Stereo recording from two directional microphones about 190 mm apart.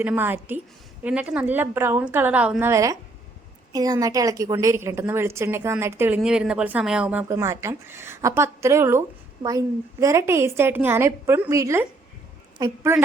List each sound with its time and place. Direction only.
0.0 s a woman's voice: 10° right (ahead or behind)